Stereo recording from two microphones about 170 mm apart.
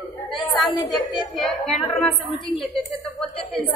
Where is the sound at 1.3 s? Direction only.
Centre (ahead or behind).